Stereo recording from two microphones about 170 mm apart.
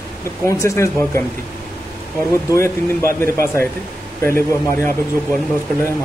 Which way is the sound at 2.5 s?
15° left (ahead or behind).